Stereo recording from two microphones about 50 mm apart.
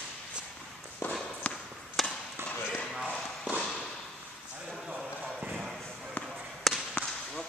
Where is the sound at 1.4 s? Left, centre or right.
Left.